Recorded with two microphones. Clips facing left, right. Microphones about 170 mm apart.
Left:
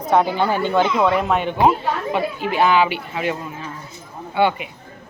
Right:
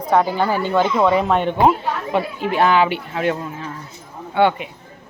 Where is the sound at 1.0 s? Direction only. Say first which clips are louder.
Right 2 dB; centre (ahead or behind).